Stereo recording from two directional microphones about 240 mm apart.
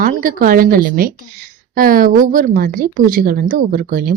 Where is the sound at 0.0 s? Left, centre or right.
Right.